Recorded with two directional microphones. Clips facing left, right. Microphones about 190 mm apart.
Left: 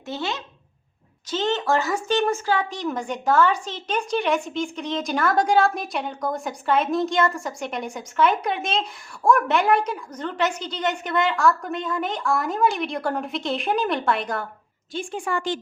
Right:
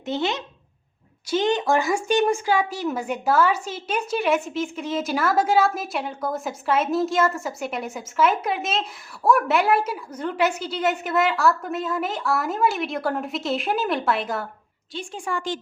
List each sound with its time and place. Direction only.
0.0 s a woman's voice: 20° right (ahead or behind); by 14.4 s centre (ahead or behind)
14.9 s a woman's voice: 60° left (ahead or behind)